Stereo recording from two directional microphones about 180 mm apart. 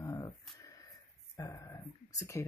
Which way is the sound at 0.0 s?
20° left (ahead or behind).